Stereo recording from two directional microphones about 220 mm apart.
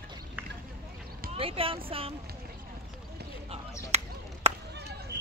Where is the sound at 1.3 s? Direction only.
25° right (ahead or behind).